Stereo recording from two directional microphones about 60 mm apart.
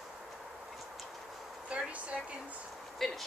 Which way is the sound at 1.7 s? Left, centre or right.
Right.